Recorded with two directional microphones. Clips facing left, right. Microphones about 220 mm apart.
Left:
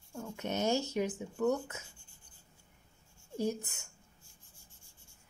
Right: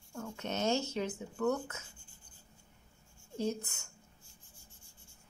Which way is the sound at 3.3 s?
15° left (ahead or behind).